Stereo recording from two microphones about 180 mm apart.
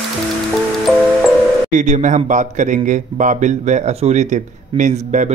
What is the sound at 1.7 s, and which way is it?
Speech, 40° right (ahead or behind).